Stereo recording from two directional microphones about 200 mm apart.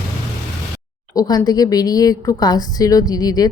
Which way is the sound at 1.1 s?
20° left (ahead or behind).